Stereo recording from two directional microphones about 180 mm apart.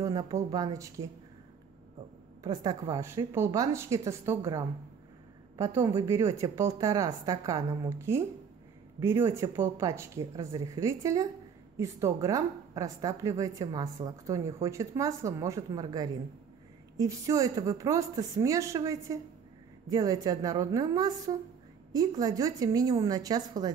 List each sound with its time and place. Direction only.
0.0 s a woman's voice: 20° right (ahead or behind)
2.4 s a woman's voice: 20° right (ahead or behind)